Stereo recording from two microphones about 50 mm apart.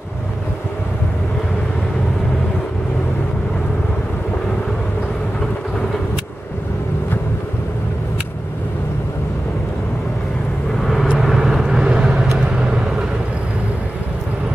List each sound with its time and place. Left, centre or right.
10.8 s vehicle: centre